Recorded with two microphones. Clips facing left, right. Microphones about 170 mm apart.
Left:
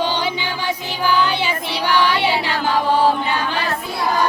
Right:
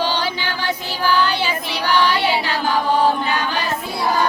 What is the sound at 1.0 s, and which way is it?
Child singing, 20° left (ahead or behind).